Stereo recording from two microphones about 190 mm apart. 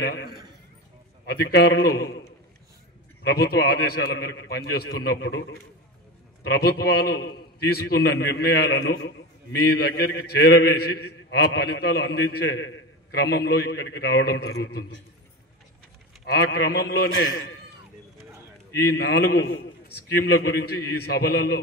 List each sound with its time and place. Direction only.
0.0 s a man's voice: 60° left (ahead or behind)
3.3 s a man's voice: 60° left (ahead or behind)
16.3 s a man's voice: 60° left (ahead or behind)
18.9 s a man's voice: 60° left (ahead or behind)